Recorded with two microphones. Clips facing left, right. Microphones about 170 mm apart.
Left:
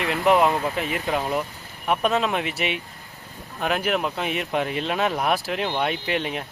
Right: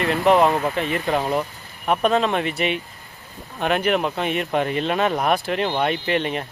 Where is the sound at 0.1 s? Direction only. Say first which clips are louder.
Right 2 dB; 5° left (ahead or behind).